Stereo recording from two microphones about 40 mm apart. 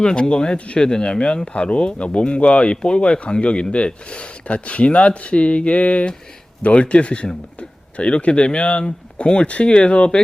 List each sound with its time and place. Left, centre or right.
0.0 s speech: left